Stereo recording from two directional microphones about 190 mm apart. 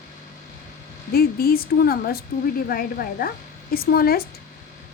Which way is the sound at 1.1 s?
50° left (ahead or behind).